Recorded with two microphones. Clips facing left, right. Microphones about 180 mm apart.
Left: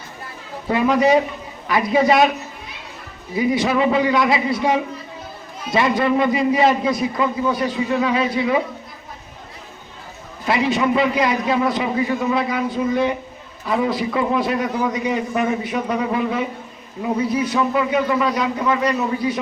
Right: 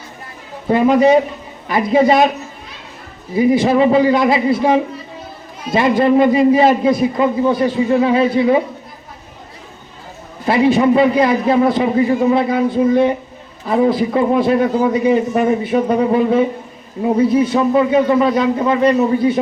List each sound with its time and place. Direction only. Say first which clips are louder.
0.7 s a man's voice: right 5 dB; 25° right (ahead or behind)
3.3 s a man's voice: right 6 dB; 30° right (ahead or behind)
10.4 s a man's voice: right 6 dB; 30° right (ahead or behind)